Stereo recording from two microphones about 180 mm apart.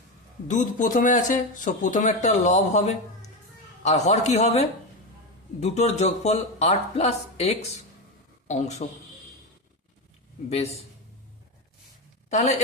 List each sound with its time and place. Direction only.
0.4 s speech: 45° left (ahead or behind)
10.5 s speech: 35° left (ahead or behind)
12.3 s speech: 40° left (ahead or behind)